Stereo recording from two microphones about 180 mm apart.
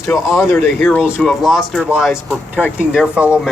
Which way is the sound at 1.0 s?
10° left (ahead or behind).